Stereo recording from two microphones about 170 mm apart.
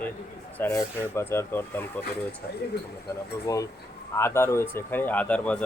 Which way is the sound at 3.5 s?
20° left (ahead or behind).